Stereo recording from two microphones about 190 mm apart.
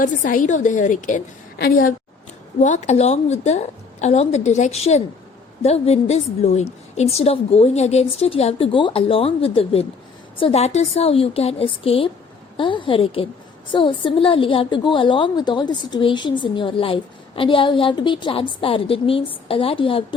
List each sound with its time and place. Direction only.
0.0 s a woman's voice: 45° left (ahead or behind)
1.5 s a woman's voice: 55° left (ahead or behind); by 20.1 s 30° left (ahead or behind)